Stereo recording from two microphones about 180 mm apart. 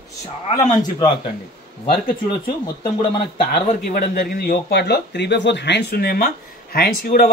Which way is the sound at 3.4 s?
45° left (ahead or behind).